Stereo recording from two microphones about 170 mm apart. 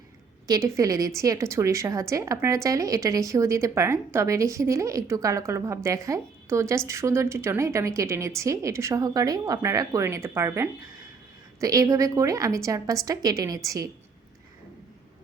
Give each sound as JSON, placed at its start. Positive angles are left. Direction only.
{"t": 0.4, "sound": "a woman's voice", "side_deg": -20}